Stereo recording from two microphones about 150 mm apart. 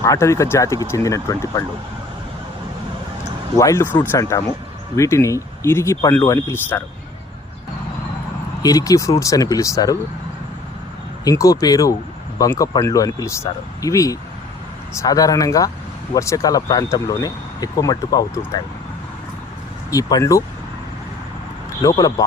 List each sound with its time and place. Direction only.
0.0 s speech: 20° left (ahead or behind)
3.6 s speech: 20° left (ahead or behind)
8.6 s speech: 25° left (ahead or behind)
11.3 s speech: 25° left (ahead or behind)
19.9 s speech: 25° left (ahead or behind)
21.8 s speech: 25° left (ahead or behind)